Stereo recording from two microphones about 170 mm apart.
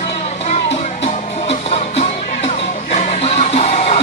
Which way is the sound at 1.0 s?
40° left (ahead or behind).